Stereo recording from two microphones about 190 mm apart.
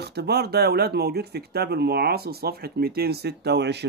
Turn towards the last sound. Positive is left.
turn(degrees=-60)  # may be behind; listen again after turning